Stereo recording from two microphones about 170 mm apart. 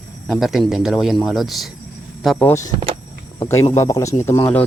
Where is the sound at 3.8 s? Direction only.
20° left (ahead or behind).